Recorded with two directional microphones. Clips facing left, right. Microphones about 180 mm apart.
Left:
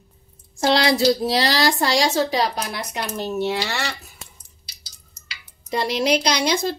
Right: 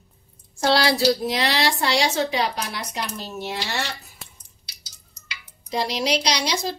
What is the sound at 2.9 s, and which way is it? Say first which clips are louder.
Speech: left 5 dB; 60° left (ahead or behind).